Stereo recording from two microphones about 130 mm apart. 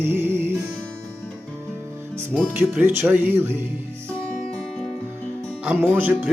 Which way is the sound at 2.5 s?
15° right (ahead or behind).